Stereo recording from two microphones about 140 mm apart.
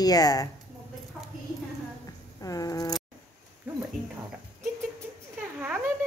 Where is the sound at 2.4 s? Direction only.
25° left (ahead or behind).